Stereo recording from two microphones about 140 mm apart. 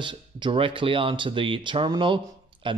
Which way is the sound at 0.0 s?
35° right (ahead or behind).